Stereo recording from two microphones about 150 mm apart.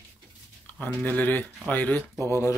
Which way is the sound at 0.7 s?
10° left (ahead or behind).